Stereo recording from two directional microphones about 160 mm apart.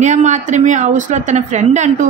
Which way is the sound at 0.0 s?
50° right (ahead or behind).